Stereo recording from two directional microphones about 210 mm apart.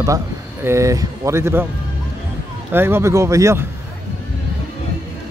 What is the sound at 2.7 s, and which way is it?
Speech, 10° right (ahead or behind).